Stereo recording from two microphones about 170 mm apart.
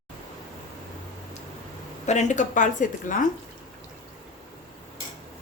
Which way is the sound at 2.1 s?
45° left (ahead or behind).